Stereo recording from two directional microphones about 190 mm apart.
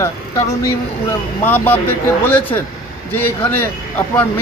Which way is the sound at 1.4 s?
10° left (ahead or behind).